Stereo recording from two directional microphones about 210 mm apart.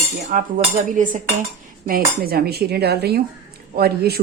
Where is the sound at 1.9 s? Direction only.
45° right (ahead or behind).